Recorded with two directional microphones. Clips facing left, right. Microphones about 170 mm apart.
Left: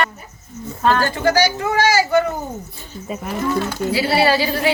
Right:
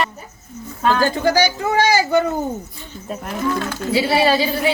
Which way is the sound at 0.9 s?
15° right (ahead or behind).